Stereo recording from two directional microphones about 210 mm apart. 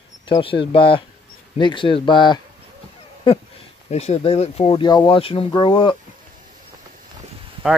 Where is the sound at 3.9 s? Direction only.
30° left (ahead or behind).